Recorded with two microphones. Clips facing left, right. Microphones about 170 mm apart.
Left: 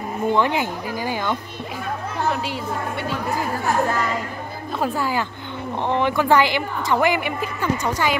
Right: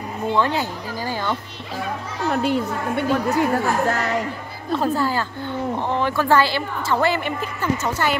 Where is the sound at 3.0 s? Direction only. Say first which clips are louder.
Right 9 dB; 70° right (ahead or behind).